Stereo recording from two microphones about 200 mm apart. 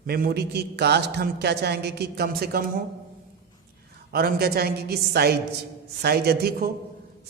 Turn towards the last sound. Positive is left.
turn(degrees=-50)  # may be behind; listen again after turning